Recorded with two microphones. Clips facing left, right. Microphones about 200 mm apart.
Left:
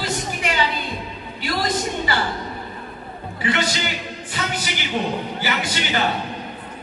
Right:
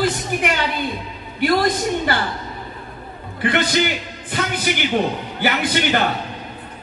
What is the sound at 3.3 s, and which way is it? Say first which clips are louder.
Speech: right 4 dB; 55° right (ahead or behind).